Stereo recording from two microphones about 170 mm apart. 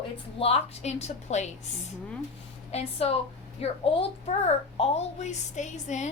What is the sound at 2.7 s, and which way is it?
A woman's voice, 35° left (ahead or behind).